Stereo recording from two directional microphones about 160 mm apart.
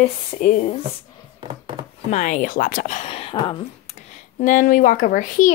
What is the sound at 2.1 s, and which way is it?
Speech, 50° left (ahead or behind).